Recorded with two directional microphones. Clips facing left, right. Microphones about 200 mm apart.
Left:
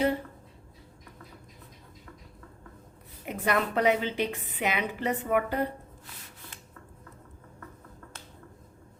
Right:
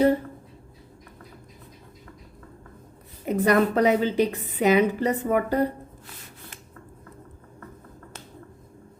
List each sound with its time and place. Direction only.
3.2 s a woman's voice: 40° right (ahead or behind)